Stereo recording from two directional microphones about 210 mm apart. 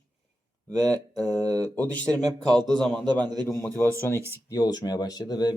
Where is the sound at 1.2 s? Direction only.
15° right (ahead or behind).